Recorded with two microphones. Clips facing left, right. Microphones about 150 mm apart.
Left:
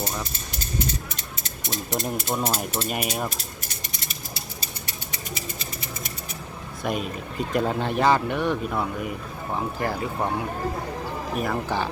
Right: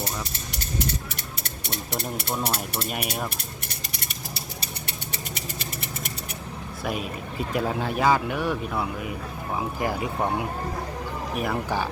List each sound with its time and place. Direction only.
0.5 s a sound: 70° right (ahead or behind)
1.4 s speech: 65° right (ahead or behind)
2.3 s speech: 5° left (ahead or behind)
5.3 s a sound: 65° right (ahead or behind)
6.8 s speech: 5° right (ahead or behind)
11.3 s speech: 10° right (ahead or behind)